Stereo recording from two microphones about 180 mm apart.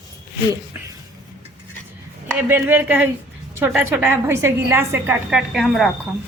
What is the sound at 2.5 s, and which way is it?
A woman's voice, 10° right (ahead or behind).